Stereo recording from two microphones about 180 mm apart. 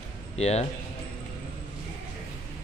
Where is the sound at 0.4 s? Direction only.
35° left (ahead or behind).